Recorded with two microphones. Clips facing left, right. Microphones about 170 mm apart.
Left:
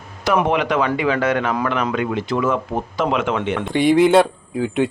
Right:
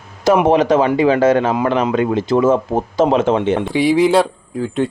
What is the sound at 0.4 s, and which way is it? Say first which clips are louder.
Speech: right 6 dB; 40° right (ahead or behind).